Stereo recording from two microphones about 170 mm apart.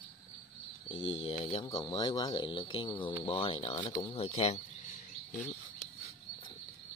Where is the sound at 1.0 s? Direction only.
35° left (ahead or behind).